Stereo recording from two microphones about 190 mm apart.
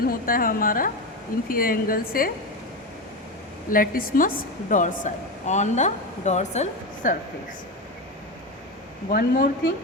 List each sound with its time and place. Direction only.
0.0 s a woman's voice: 50° left (ahead or behind)
3.7 s a woman's voice: 50° left (ahead or behind)
9.0 s a woman's voice: 45° left (ahead or behind)